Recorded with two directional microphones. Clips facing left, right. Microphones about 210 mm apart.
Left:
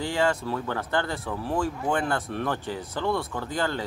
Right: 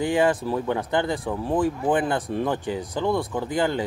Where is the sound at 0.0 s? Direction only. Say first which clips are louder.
Right 4 dB; 15° right (ahead or behind).